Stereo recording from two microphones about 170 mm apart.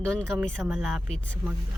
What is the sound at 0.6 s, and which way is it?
Speech, centre (ahead or behind).